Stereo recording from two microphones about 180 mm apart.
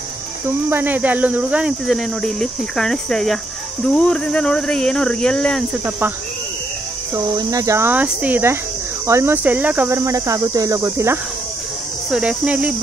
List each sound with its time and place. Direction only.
0.7 s speech: 10° right (ahead or behind)
5.9 s speech: 10° right (ahead or behind)
7.3 s speech: 20° right (ahead or behind)